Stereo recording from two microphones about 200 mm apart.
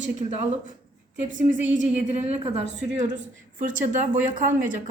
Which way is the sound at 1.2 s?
40° right (ahead or behind).